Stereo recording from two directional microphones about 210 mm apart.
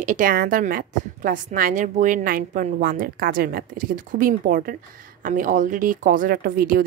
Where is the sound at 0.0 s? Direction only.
40° right (ahead or behind).